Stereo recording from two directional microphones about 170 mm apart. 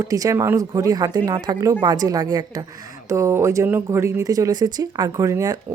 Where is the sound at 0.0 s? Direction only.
20° right (ahead or behind).